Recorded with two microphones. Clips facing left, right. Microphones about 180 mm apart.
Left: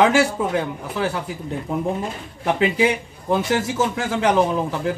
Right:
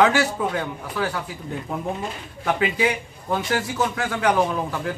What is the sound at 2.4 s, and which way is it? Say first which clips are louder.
A man's voice: left 3 dB; 25° left (ahead or behind).